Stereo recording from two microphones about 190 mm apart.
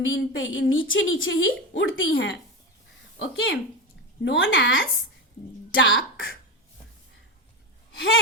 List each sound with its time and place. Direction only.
0.0 s a woman's voice: 90° left
3.2 s a woman's voice: 70° left (ahead or behind)
5.7 s speech: 85° left
7.9 s speech: 80° left